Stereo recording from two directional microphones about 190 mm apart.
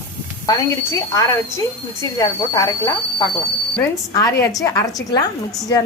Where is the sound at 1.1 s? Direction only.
15° left (ahead or behind).